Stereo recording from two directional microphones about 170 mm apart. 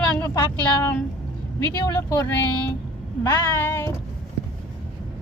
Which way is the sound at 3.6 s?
15° left (ahead or behind).